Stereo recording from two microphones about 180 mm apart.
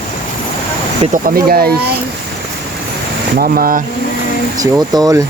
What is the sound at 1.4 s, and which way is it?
Speech, 55° right (ahead or behind).